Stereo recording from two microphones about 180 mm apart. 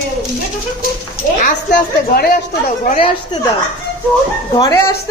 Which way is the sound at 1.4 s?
50° left (ahead or behind).